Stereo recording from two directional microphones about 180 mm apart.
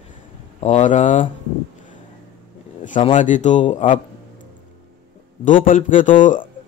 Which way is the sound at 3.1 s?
45° left (ahead or behind).